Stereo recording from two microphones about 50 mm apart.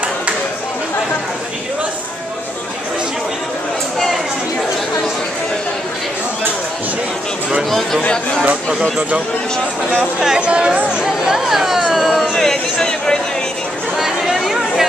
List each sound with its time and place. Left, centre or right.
8.0 s speech: left
10.2 s speech: centre
11.1 s speech: centre
13.9 s chatter: centre